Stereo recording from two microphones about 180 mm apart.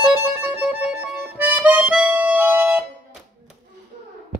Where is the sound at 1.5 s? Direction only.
10° right (ahead or behind).